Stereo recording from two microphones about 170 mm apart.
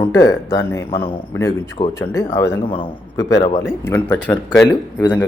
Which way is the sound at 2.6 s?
30° left (ahead or behind).